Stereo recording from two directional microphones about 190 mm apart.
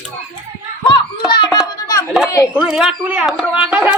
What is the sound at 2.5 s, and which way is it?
Speech, 5° right (ahead or behind).